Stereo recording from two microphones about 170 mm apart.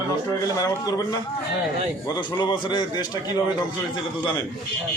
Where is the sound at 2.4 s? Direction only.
25° left (ahead or behind).